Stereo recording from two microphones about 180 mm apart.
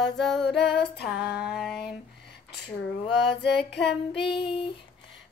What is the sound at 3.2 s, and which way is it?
Female singing, 70° left (ahead or behind).